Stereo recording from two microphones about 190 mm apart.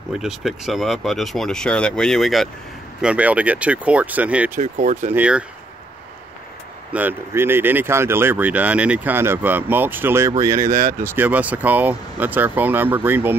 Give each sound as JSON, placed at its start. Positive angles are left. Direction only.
{"t": 0.2, "sound": "speech", "side_deg": 0}
{"t": 4.6, "sound": "speech", "side_deg": -40}
{"t": 5.1, "sound": "speech", "side_deg": -5}
{"t": 6.9, "sound": "speech", "side_deg": -10}
{"t": 10.7, "sound": "speech", "side_deg": -40}
{"t": 11.0, "sound": "speech", "side_deg": -10}